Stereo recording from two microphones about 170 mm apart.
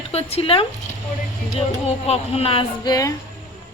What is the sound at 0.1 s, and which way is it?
Speech, 35° left (ahead or behind).